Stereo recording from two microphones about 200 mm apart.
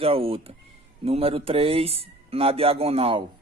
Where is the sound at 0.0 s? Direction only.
30° right (ahead or behind).